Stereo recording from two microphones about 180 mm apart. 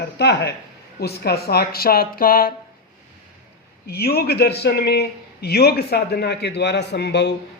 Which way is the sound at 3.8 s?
60° left (ahead or behind).